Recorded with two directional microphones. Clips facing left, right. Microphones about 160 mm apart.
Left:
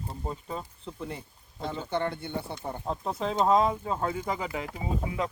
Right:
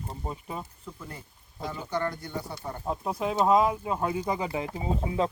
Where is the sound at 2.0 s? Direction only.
25° left (ahead or behind).